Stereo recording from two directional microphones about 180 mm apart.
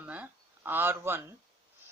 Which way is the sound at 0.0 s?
10° right (ahead or behind).